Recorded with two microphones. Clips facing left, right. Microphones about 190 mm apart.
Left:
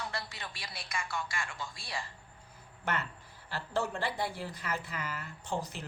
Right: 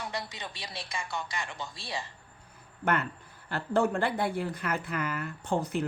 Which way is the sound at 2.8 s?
60° right (ahead or behind).